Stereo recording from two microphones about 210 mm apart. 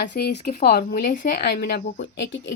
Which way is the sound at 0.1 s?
50° left (ahead or behind).